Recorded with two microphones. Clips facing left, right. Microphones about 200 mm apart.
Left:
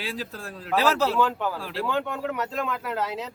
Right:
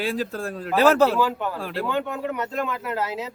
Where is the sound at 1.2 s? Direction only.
Centre (ahead or behind).